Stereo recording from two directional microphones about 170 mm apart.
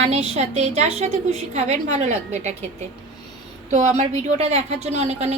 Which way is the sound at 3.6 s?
40° right (ahead or behind).